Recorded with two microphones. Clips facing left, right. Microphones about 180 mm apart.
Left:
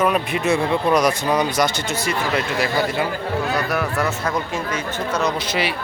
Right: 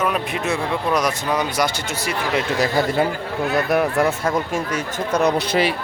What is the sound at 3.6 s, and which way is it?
Speech, 20° right (ahead or behind).